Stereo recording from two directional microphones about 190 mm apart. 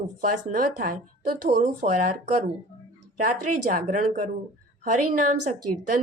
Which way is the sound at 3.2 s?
45° right (ahead or behind).